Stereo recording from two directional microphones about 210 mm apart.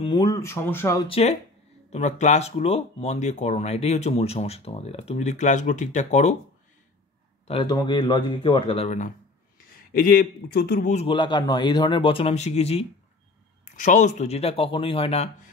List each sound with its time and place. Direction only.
0.0 s speech: 20° left (ahead or behind)
1.0 s speech: 25° left (ahead or behind)
7.4 s a man's voice: 25° left (ahead or behind); by 11.0 s 45° left (ahead or behind)
11.0 s speech: 25° left (ahead or behind)